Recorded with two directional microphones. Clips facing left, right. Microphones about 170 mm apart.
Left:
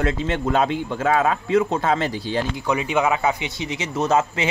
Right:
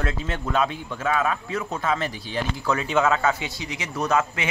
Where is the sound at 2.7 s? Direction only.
15° left (ahead or behind).